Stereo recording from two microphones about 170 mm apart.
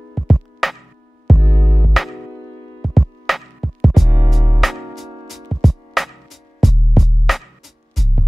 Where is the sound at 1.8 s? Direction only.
Centre (ahead or behind).